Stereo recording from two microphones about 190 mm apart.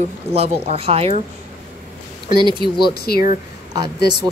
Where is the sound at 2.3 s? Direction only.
25° right (ahead or behind).